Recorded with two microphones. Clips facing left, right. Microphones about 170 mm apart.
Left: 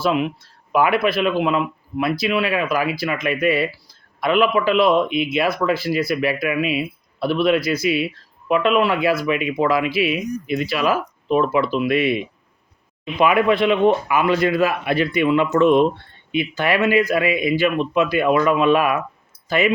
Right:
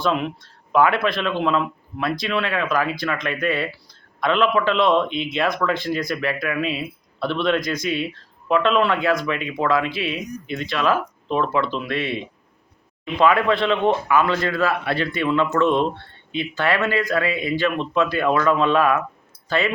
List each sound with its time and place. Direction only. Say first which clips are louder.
0.0 s speech: left 2 dB; 5° left (ahead or behind)